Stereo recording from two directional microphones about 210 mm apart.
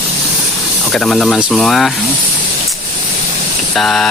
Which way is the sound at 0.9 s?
5° left (ahead or behind).